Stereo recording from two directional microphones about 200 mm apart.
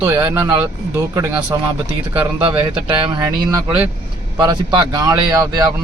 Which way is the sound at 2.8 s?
20° right (ahead or behind).